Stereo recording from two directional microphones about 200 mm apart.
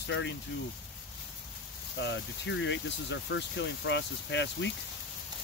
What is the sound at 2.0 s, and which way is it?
Speech, 65° left (ahead or behind).